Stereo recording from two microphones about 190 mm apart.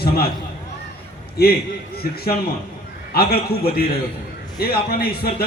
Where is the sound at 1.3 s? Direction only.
55° left (ahead or behind).